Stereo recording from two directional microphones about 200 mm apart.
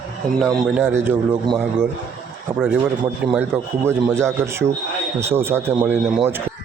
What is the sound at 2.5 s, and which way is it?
Speech, 5° right (ahead or behind).